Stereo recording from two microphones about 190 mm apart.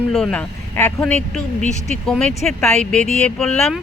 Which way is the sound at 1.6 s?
40° left (ahead or behind).